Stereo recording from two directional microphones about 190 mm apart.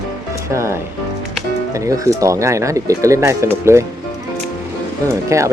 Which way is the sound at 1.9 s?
15° right (ahead or behind).